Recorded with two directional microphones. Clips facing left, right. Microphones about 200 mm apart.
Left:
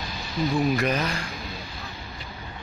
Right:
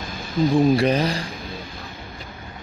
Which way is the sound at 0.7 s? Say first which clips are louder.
Right 6 dB; 30° right (ahead or behind).